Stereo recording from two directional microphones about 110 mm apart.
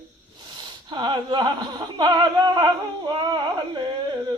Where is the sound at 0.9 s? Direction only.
45° right (ahead or behind).